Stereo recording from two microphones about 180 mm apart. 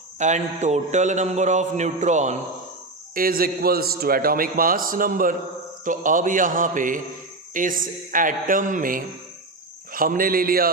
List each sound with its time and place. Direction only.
0.2 s a man's voice: 40° right (ahead or behind)
3.2 s a man's voice: 55° right (ahead or behind)